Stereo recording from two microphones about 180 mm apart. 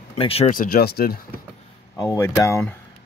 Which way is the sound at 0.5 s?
55° left (ahead or behind).